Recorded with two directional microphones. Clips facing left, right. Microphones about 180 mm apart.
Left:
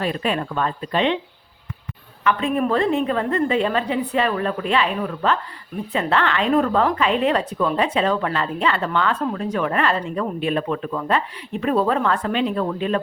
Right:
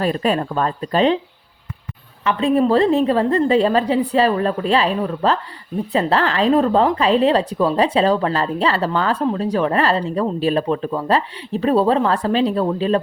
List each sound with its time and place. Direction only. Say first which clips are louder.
0.0 s speech: right 4 dB; 40° right (ahead or behind)
2.2 s speech: right 4 dB; 30° right (ahead or behind)